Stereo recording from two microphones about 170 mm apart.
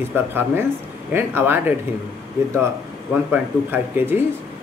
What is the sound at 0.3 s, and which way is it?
Speech, 15° right (ahead or behind).